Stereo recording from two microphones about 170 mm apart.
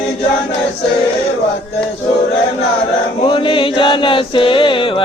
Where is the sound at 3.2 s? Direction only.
30° left (ahead or behind).